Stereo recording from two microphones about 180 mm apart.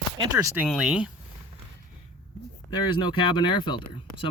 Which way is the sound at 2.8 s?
25° left (ahead or behind).